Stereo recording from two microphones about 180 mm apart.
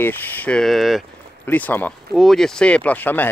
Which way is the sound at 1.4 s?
10° left (ahead or behind).